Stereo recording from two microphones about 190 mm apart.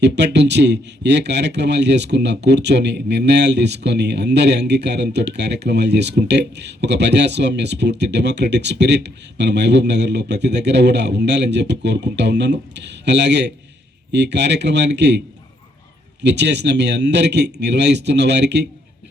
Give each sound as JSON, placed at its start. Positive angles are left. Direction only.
{"t": 0.0, "sound": "speech", "side_deg": -65}
{"t": 16.2, "sound": "speech", "side_deg": -65}